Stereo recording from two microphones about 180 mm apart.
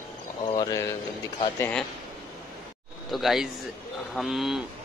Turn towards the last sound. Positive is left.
turn(degrees=0)  # may be behind; listen again after turning